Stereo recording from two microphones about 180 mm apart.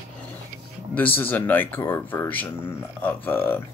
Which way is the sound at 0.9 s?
10° left (ahead or behind).